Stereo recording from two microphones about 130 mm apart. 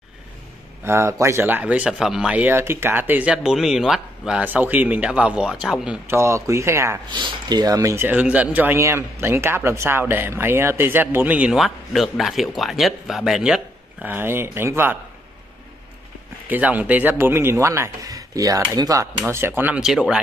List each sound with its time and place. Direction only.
0.8 s speech: 20° right (ahead or behind); by 5.9 s 5° right (ahead or behind)
6.0 s speech: 20° right (ahead or behind)
7.1 s speech: 35° right (ahead or behind); by 13.6 s 5° right (ahead or behind)
14.0 s speech: 15° right (ahead or behind)
16.4 s speech: 15° right (ahead or behind)